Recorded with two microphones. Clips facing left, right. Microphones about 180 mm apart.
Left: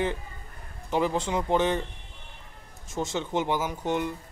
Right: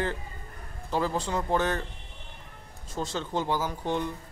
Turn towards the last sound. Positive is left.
turn(degrees=15)  # may be behind; listen again after turning